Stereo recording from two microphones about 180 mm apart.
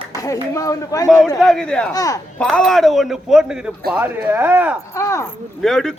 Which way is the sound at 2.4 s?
5° left (ahead or behind).